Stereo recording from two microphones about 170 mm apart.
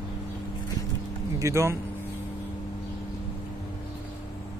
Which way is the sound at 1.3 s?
15° right (ahead or behind).